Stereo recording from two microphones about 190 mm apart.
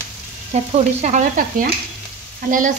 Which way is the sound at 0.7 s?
40° right (ahead or behind).